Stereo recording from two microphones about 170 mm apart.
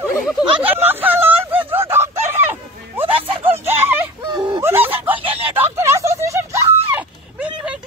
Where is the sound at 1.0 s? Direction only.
10° right (ahead or behind).